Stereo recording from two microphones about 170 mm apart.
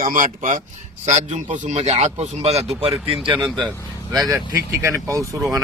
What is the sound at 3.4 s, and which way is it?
Speech, 5° left (ahead or behind).